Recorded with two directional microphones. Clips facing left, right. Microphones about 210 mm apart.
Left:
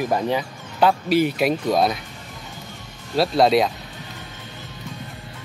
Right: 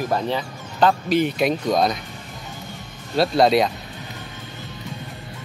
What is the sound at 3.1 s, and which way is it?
Speech, centre (ahead or behind).